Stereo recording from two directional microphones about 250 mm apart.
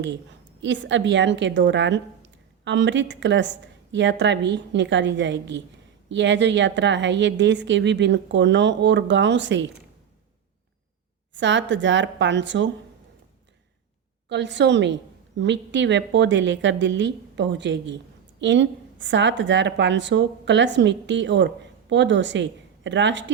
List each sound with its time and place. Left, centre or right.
0.0 s a woman's voice: right
11.3 s a woman's voice: right
14.3 s a woman's voice: right